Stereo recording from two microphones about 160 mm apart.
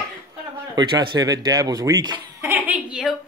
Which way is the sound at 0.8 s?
25° right (ahead or behind).